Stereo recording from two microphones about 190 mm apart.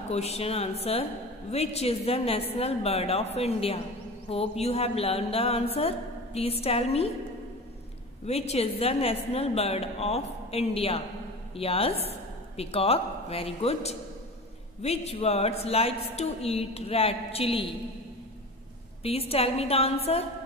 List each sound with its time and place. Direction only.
0.1 s a woman's voice: 35° left (ahead or behind)
8.3 s a woman's voice: 35° left (ahead or behind)
19.0 s a woman's voice: 30° left (ahead or behind)